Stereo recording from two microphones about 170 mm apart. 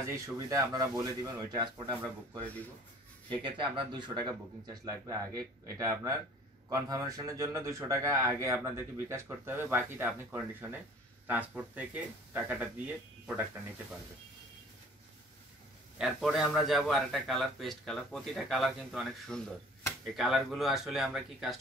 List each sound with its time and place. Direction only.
0.1 s speech: 20° right (ahead or behind)
3.4 s a man's voice: 30° right (ahead or behind); by 12.9 s 10° right (ahead or behind)
16.0 s a man's voice: centre (ahead or behind)